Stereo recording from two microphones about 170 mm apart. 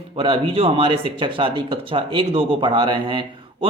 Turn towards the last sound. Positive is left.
turn(degrees=-25)  # may be behind; listen again after turning